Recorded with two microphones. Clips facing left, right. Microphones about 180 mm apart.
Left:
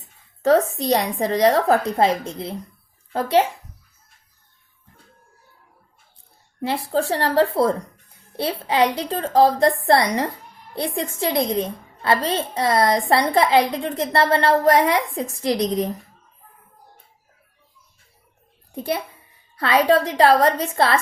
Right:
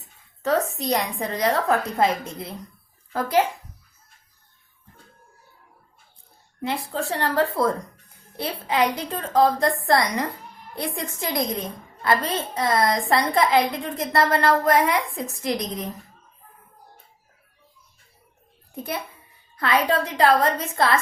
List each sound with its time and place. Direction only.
0.4 s a woman's voice: 35° left (ahead or behind)
6.6 s a woman's voice: 35° left (ahead or behind)
19.5 s a woman's voice: 30° left (ahead or behind)